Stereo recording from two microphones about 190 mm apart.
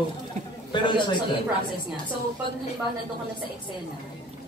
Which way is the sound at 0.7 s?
25° left (ahead or behind).